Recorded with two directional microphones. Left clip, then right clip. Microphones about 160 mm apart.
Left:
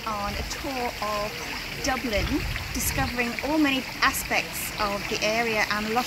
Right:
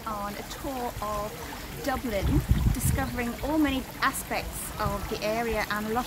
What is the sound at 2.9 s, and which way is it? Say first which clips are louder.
Speech: left 5 dB; centre (ahead or behind).